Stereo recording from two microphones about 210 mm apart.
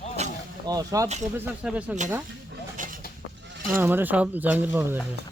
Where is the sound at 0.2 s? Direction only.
30° right (ahead or behind).